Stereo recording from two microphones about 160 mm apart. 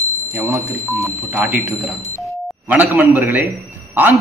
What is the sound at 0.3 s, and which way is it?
Speech, 20° right (ahead or behind).